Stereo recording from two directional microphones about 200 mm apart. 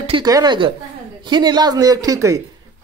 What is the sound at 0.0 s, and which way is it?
A woman's voice, 20° right (ahead or behind).